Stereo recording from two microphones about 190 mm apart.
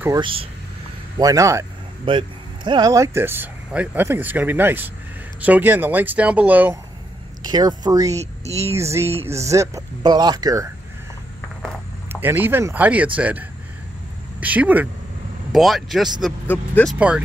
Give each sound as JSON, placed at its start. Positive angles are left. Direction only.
{"t": 0.2, "sound": "speech", "side_deg": -30}
{"t": 1.1, "sound": "speech", "side_deg": -20}
{"t": 7.4, "sound": "speech", "side_deg": -20}
{"t": 12.1, "sound": "speech", "side_deg": -10}